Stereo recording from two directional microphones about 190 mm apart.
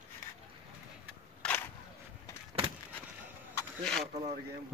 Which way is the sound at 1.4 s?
10° left (ahead or behind).